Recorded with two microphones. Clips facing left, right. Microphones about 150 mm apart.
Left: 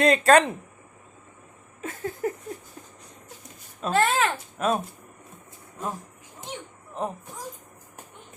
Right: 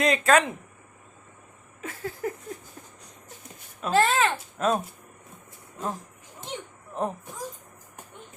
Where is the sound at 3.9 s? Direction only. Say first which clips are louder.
Right 1 dB; 5° left (ahead or behind).